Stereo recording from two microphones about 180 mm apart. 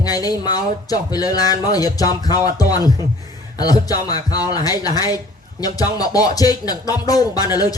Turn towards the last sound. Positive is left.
turn(degrees=20)  # may be behind; listen again after turning